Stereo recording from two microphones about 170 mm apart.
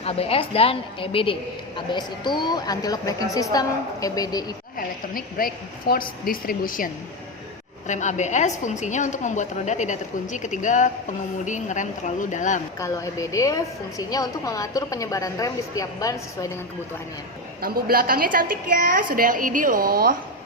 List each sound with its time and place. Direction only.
0.0 s a woman's voice: 35° left (ahead or behind)
5.4 s a woman's voice: 60° left (ahead or behind)
12.8 s a woman's voice: 20° left (ahead or behind)
17.6 s a woman's voice: 60° right (ahead or behind)